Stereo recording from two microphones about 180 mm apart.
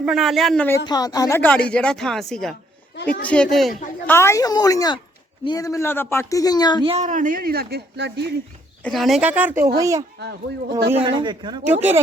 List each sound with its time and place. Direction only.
0.0 s speech: centre (ahead or behind)
0.9 s speech: 20° left (ahead or behind); by 3.8 s centre (ahead or behind)
4.0 s speech: 15° left (ahead or behind)
6.8 s speech: 40° right (ahead or behind); by 8.3 s 70° right (ahead or behind)
8.8 s speech: centre (ahead or behind); by 11.6 s 25° right (ahead or behind)
11.6 s speech: 10° right (ahead or behind)